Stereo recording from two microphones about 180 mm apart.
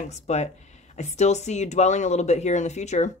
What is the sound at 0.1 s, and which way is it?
Speech, 40° left (ahead or behind).